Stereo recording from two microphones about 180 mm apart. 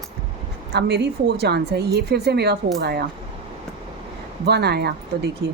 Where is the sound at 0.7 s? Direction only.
65° right (ahead or behind).